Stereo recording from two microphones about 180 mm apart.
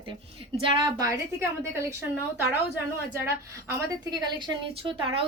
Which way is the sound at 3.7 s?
20° right (ahead or behind).